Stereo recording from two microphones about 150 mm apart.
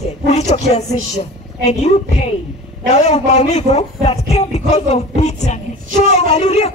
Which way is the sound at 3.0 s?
50° left (ahead or behind).